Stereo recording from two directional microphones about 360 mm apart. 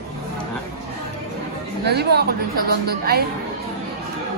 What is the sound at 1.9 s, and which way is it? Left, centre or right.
A woman's voice, right.